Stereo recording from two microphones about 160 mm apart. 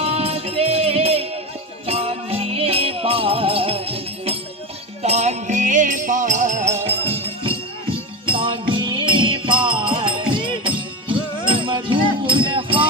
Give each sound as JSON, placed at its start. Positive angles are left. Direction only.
{"t": 0.0, "sound": "music", "side_deg": -40}
{"t": 6.8, "sound": "music", "side_deg": -35}